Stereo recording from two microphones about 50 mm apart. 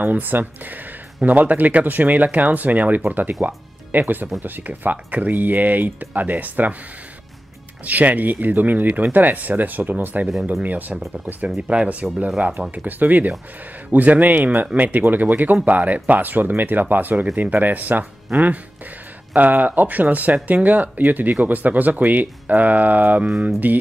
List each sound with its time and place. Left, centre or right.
0.0 s speech: right
7.8 s speech: right
11.4 s speech: centre; by 23.8 s right